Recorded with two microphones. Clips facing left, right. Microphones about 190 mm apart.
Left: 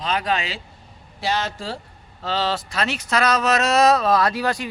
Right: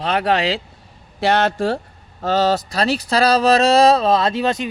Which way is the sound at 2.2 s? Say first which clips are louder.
Right 7 dB; 45° right (ahead or behind).